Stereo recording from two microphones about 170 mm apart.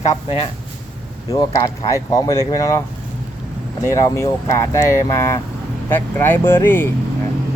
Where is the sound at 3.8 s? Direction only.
15° left (ahead or behind).